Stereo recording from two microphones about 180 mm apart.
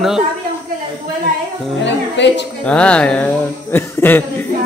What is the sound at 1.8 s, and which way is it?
Speech, 75° left (ahead or behind).